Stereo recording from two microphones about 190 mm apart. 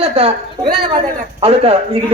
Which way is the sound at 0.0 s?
30° right (ahead or behind).